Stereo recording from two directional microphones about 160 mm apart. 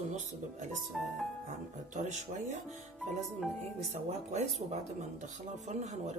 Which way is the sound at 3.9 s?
45° right (ahead or behind).